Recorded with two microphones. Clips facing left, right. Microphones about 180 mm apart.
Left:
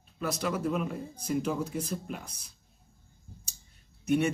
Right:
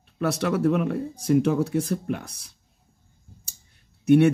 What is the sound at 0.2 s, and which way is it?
Speech, 70° right (ahead or behind).